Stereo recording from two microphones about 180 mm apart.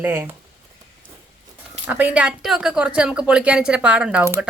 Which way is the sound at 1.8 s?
10° right (ahead or behind).